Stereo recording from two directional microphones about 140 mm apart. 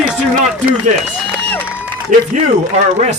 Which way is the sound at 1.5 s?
10° left (ahead or behind).